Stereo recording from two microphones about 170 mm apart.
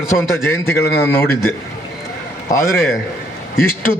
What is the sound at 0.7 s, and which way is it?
Speech, 15° left (ahead or behind).